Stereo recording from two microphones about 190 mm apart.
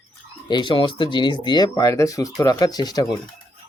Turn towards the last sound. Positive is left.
turn(degrees=20)  # may be behind; listen again after turning